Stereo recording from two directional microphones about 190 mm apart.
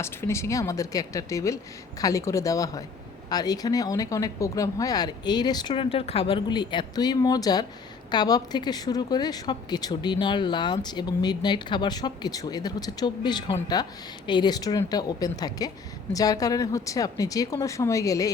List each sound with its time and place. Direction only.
0.0 s a woman's voice: 15° left (ahead or behind)